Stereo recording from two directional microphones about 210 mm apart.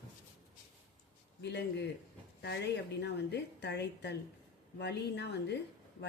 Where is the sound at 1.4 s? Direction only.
55° left (ahead or behind).